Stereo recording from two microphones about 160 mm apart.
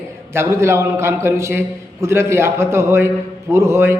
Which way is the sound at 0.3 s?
15° right (ahead or behind).